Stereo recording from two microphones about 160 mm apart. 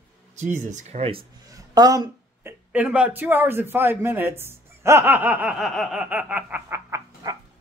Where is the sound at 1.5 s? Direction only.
25° right (ahead or behind).